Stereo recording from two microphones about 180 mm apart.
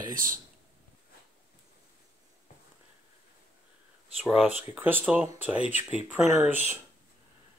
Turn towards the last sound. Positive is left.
turn(degrees=-10)  # may be behind; listen again after turning